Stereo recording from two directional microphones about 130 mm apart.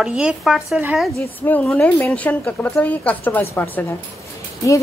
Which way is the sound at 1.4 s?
10° left (ahead or behind).